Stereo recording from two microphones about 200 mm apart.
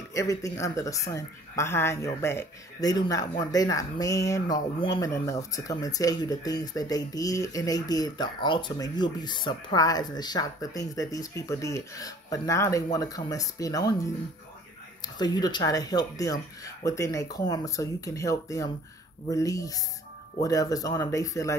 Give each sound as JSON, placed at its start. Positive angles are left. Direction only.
{"t": 0.1, "sound": "speech", "side_deg": 15}
{"t": 15.1, "sound": "speech", "side_deg": 20}